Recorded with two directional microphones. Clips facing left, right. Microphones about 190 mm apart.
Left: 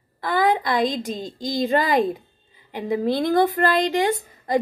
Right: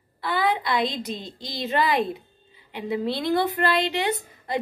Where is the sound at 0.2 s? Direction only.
45° left (ahead or behind).